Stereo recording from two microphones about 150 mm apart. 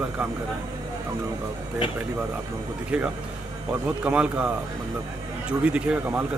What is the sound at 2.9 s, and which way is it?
Speech, 5° right (ahead or behind).